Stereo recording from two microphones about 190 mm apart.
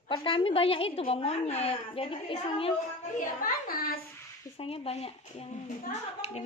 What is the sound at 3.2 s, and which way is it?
Speech, 50° left (ahead or behind).